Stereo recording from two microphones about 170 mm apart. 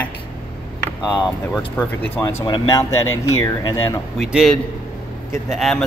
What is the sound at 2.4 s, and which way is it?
Speech, 30° left (ahead or behind).